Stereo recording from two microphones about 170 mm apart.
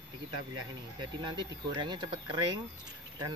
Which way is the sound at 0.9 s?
25° right (ahead or behind).